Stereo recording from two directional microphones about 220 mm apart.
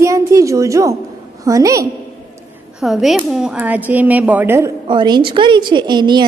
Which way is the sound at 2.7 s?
Centre (ahead or behind).